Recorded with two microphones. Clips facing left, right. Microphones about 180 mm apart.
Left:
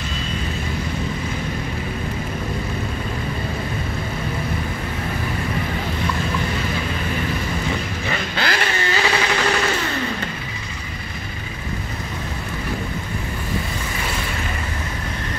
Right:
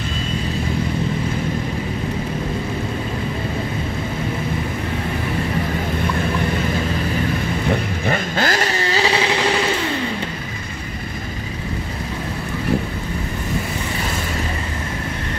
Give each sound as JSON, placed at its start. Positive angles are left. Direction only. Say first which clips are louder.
{"t": 7.7, "sound": "vehicle", "louder": "right 5 dB", "side_deg": -45}